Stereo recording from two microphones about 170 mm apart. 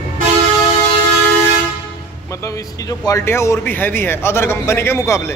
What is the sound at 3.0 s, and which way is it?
A man's voice, 15° left (ahead or behind).